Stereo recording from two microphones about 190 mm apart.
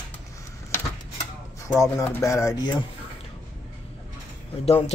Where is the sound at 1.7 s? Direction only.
15° left (ahead or behind).